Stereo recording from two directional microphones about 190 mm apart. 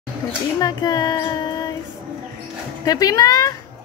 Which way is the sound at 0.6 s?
20° left (ahead or behind).